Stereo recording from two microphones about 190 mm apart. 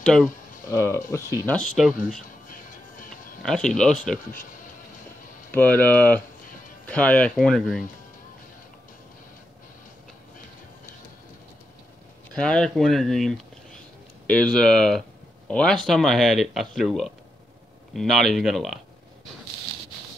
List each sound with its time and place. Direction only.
0.0 s speech: 5° left (ahead or behind)
0.7 s speech: 15° left (ahead or behind)
1.5 s speech: centre (ahead or behind)
3.4 s speech: 5° left (ahead or behind)
5.5 s speech: 10° left (ahead or behind)
12.4 s speech: 5° left (ahead or behind)